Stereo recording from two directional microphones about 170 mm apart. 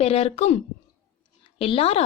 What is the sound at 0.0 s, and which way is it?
A woman's voice, 35° left (ahead or behind).